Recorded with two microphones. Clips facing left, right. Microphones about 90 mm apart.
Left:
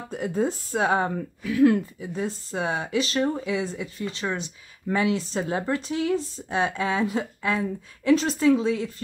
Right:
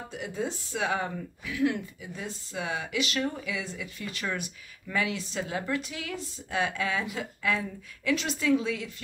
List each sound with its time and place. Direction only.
0.1 s speech: 40° left (ahead or behind)